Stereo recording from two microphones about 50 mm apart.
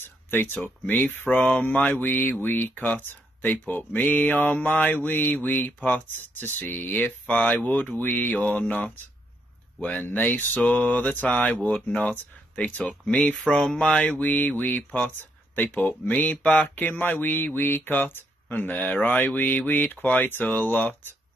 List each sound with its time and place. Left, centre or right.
0.0 s a sound: left
1.0 s speech: left
6.1 s speech: left
7.0 s speech: left
14.2 s speech: left